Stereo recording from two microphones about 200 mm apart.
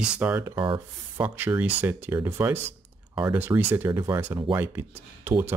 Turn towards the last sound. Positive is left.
turn(degrees=-10)  # may be behind; listen again after turning